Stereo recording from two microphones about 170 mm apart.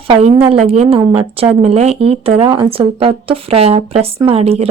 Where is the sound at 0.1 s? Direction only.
35° right (ahead or behind).